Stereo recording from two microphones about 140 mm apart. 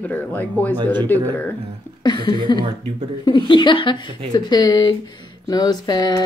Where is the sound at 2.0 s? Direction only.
30° left (ahead or behind).